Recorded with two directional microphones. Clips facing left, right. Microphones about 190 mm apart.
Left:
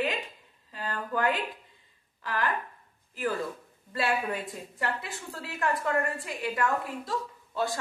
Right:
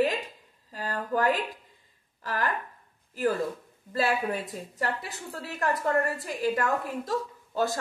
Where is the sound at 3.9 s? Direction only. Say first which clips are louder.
Right 2 dB; 40° right (ahead or behind).